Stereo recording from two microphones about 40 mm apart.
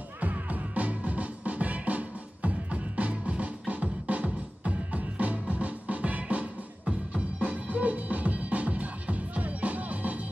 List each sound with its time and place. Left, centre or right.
0.2 s music: right